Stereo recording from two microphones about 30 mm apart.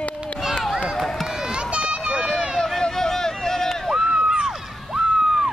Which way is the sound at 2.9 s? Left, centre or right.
Centre.